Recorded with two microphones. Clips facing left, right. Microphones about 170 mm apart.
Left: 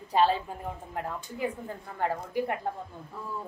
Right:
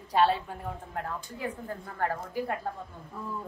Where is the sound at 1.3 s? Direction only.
10° left (ahead or behind).